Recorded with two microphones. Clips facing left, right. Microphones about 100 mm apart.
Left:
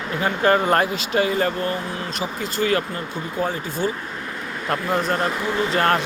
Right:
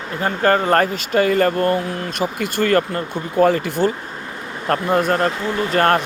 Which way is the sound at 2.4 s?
65° right (ahead or behind).